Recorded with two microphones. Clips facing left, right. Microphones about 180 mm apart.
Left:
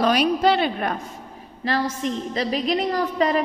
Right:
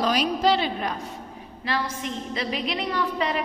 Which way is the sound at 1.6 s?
40° left (ahead or behind).